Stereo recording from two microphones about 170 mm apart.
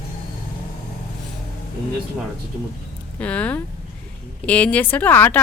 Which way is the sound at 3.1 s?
10° left (ahead or behind).